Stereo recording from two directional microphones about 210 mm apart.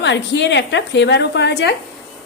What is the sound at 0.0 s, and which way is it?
A woman's voice, 55° left (ahead or behind).